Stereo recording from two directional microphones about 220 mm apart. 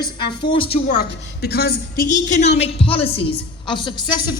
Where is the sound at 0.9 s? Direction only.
45° left (ahead or behind).